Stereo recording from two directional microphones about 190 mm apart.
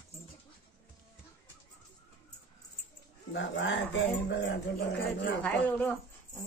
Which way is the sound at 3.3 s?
85° left.